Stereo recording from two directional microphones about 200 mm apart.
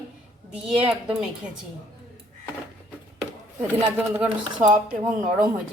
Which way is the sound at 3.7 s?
10° right (ahead or behind).